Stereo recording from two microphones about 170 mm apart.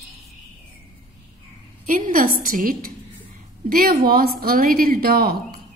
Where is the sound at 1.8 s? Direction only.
50° right (ahead or behind).